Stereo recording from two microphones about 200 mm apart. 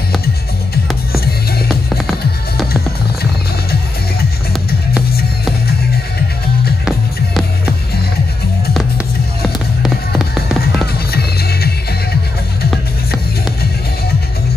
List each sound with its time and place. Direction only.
1.7 s music: centre (ahead or behind)
6.8 s music: centre (ahead or behind)
9.8 s music: centre (ahead or behind)
11.1 s music: 50° left (ahead or behind)